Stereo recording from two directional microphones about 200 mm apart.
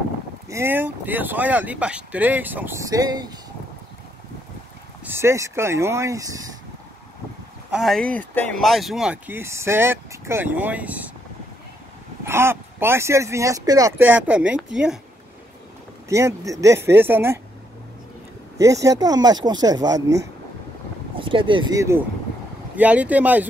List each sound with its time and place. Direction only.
0.5 s speech: 10° right (ahead or behind)
5.0 s speech: 10° right (ahead or behind)
7.7 s speech: centre (ahead or behind)
12.3 s speech: 10° right (ahead or behind)
16.1 s speech: 15° right (ahead or behind)
18.6 s speech: 15° right (ahead or behind)